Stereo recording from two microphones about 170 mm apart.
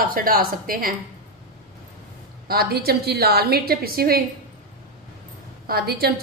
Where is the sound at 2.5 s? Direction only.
65° right (ahead or behind).